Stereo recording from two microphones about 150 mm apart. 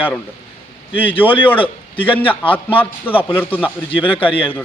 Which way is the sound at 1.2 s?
15° left (ahead or behind).